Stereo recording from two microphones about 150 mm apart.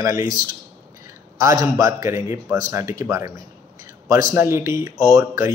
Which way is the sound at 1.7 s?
20° right (ahead or behind).